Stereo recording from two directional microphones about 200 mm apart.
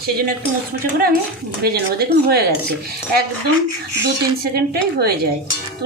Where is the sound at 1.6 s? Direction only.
50° right (ahead or behind).